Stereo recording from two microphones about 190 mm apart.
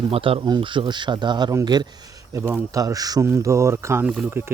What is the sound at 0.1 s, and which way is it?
Speech, 30° right (ahead or behind).